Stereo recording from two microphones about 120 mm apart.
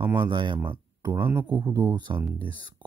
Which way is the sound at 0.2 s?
40° right (ahead or behind).